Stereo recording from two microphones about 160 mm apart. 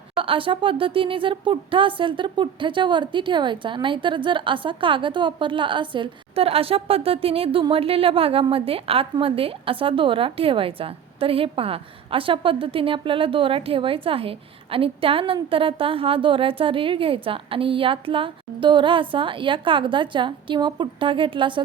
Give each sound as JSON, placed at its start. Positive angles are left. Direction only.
{"t": 0.2, "sound": "speech", "side_deg": -35}